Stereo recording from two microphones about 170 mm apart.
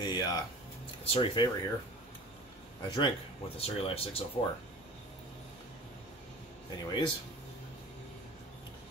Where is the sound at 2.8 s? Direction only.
25° left (ahead or behind).